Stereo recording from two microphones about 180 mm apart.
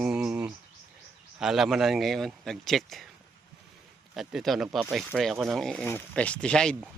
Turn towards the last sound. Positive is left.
turn(degrees=5)  # may be behind; listen again after turning